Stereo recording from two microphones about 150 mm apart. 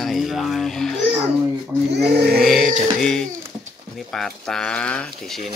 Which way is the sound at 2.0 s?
90° right.